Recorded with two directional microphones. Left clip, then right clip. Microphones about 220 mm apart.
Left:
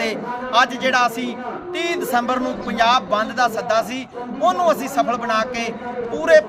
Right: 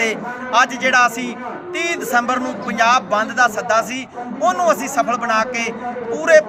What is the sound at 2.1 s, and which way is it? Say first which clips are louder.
A man's voice: right 3 dB; centre (ahead or behind).